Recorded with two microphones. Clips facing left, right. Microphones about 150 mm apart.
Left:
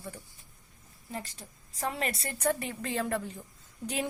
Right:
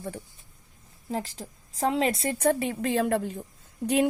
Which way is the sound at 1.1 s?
90° right.